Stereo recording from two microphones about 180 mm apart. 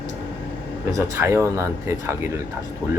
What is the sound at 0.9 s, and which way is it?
Speech, 15° right (ahead or behind).